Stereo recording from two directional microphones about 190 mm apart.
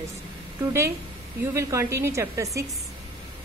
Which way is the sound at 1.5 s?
15° right (ahead or behind).